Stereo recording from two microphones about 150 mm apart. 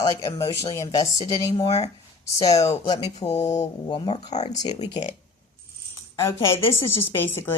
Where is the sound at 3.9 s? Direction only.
35° left (ahead or behind).